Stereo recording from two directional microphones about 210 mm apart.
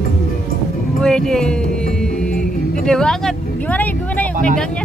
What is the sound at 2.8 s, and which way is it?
Vehicle, 5° left (ahead or behind).